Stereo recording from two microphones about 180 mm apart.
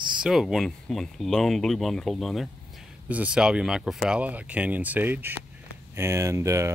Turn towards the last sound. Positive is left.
turn(degrees=-15)  # may be behind; listen again after turning